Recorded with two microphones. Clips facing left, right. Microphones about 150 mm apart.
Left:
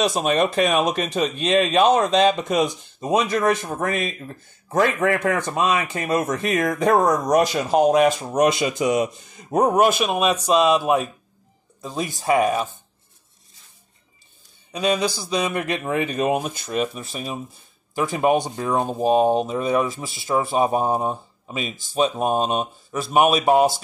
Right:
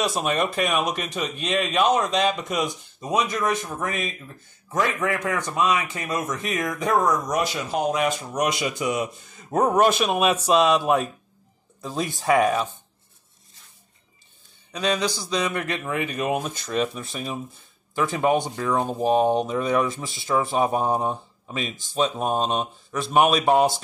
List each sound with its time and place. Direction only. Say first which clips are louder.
0.0 s speech: left 4 dB; 20° left (ahead or behind)
3.7 s speech: left 4 dB; 45° left (ahead or behind); by 12.6 s 5° left (ahead or behind)
14.7 s speech: left 3 dB; 10° left (ahead or behind)
15.8 s speech: left 4 dB; 25° left (ahead or behind)
16.5 s speech: left 1 dB; 10° left (ahead or behind)